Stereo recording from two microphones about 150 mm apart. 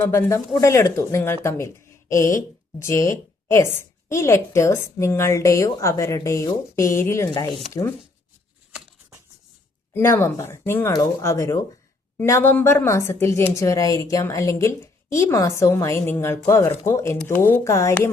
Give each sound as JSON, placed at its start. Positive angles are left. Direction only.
{"t": 0.0, "sound": "speech", "side_deg": 15}
{"t": 9.9, "sound": "speech", "side_deg": 15}